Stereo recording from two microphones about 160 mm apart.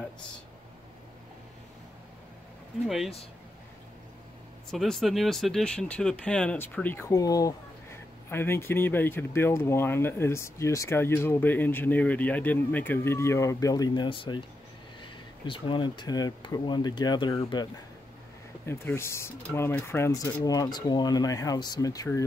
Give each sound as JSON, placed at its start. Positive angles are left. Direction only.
{"t": 4.6, "sound": "speech", "side_deg": 5}
{"t": 18.7, "sound": "speech", "side_deg": 15}